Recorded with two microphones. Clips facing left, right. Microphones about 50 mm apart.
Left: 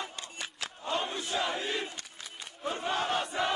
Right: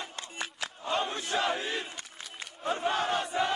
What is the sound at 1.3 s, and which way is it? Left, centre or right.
Crowd, right.